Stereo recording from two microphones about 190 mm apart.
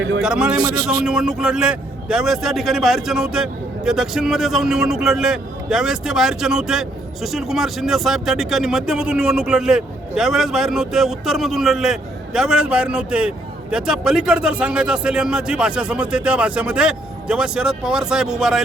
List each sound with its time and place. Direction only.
0.2 s a man's voice: 5° right (ahead or behind)
0.6 s a man's voice: 20° right (ahead or behind)
1.0 s a man's voice: 5° right (ahead or behind)